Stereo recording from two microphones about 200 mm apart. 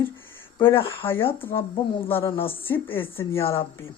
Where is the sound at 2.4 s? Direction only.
10° left (ahead or behind).